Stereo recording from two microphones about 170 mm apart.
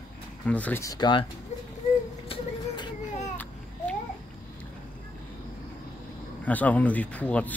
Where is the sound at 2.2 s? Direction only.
30° left (ahead or behind).